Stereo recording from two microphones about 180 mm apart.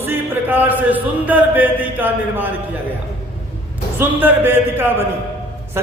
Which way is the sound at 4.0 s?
10° right (ahead or behind).